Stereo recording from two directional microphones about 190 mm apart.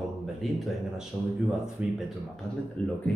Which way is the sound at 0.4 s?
Centre (ahead or behind).